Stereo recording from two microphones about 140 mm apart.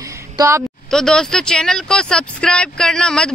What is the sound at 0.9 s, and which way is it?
Speech, 5° left (ahead or behind).